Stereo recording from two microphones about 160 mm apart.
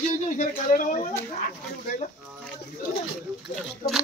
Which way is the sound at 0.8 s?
50° left (ahead or behind).